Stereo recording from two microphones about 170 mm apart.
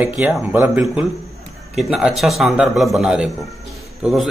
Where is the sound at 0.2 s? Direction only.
10° right (ahead or behind).